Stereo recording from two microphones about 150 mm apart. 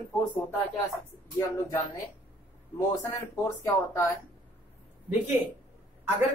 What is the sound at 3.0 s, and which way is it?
Speech, 20° left (ahead or behind).